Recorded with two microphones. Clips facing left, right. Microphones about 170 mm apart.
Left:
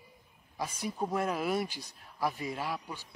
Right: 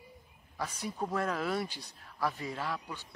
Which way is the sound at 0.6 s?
15° left (ahead or behind).